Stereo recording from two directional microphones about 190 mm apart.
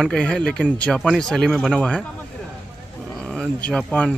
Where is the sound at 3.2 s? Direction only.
5° left (ahead or behind).